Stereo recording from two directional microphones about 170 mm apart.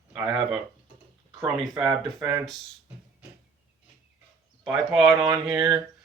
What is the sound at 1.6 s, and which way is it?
Speech, centre (ahead or behind).